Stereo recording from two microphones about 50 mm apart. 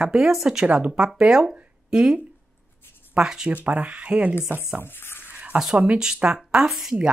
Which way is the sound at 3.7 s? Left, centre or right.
Right.